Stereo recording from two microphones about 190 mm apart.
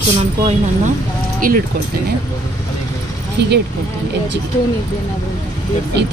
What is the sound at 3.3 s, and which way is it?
Speech, 60° right (ahead or behind).